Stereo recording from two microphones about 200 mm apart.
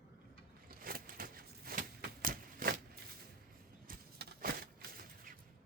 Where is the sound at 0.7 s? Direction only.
45° right (ahead or behind).